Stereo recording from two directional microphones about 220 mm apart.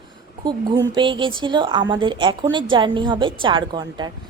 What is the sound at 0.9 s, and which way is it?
A woman's voice, 20° right (ahead or behind).